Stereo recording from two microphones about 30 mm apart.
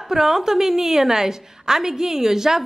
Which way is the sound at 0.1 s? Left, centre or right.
Centre.